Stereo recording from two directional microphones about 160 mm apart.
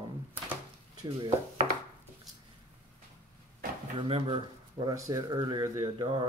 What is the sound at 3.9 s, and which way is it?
Speech, 35° right (ahead or behind).